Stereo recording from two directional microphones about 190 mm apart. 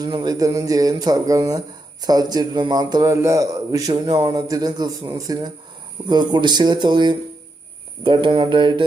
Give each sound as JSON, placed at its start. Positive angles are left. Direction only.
{"t": 0.0, "sound": "speech", "side_deg": -20}